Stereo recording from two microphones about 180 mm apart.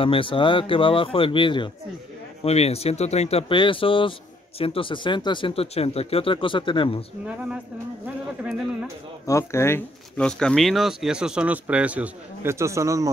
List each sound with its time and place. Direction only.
0.0 s speech: 30° left (ahead or behind)
7.2 s speech: 5° right (ahead or behind)
9.2 s speech: 15° left (ahead or behind); by 13.1 s 15° right (ahead or behind)